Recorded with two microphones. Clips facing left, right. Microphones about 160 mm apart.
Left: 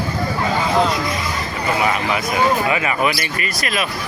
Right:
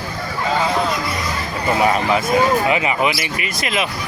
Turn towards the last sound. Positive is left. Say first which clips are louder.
# right 1 dB
turn(degrees=-20)  # may be behind; listen again after turning